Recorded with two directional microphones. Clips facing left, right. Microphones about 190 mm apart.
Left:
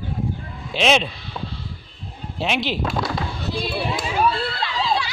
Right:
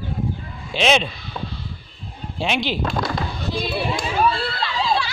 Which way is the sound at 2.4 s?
Centre (ahead or behind).